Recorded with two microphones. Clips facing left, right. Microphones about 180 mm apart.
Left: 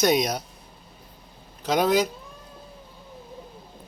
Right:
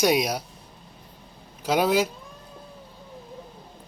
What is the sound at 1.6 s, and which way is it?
Speech, 5° right (ahead or behind).